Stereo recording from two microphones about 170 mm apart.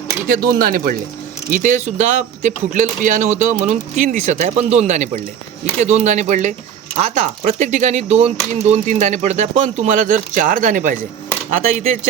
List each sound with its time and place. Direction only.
0.3 s speech: 60° right (ahead or behind)
11.5 s speech: 40° right (ahead or behind)